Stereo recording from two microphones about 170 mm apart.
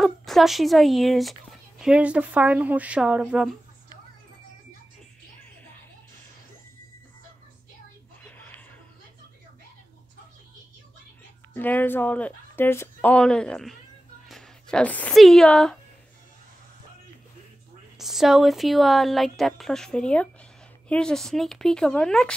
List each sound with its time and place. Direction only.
0.0 s speech: centre (ahead or behind)
8.2 s music: 10° left (ahead or behind)
11.5 s speech: 10° left (ahead or behind)
17.9 s speech: centre (ahead or behind)